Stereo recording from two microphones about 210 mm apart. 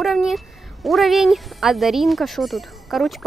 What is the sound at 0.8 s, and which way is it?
Speech, centre (ahead or behind).